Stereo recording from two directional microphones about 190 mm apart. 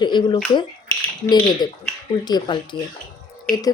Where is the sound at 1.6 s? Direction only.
20° left (ahead or behind).